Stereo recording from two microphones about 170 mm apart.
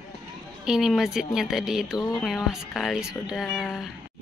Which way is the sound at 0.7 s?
5° right (ahead or behind).